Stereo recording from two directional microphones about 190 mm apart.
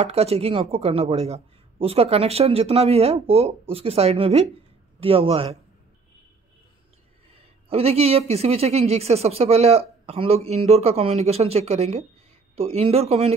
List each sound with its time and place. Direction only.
0.0 s a man's voice: 35° right (ahead or behind)
7.7 s speech: 30° right (ahead or behind)